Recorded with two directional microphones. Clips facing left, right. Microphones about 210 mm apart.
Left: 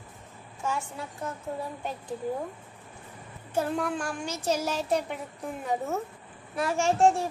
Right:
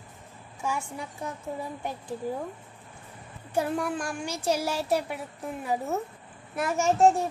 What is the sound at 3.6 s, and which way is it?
A child's voice, 10° right (ahead or behind).